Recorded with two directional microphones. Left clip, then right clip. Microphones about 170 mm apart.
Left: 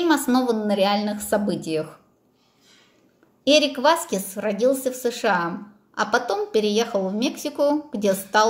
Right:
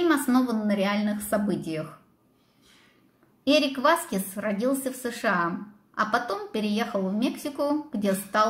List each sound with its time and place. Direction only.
0.0 s speech: 20° left (ahead or behind)
3.4 s a woman's voice: 15° left (ahead or behind)